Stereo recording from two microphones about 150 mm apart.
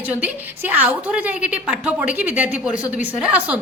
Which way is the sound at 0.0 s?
10° right (ahead or behind).